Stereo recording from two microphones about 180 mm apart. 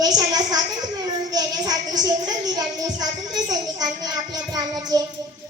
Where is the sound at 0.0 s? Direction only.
20° right (ahead or behind).